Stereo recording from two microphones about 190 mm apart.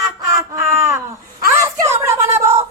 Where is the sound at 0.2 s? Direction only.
15° right (ahead or behind).